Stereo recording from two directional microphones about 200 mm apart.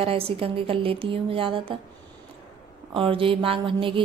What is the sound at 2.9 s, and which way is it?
A woman's voice, 25° right (ahead or behind).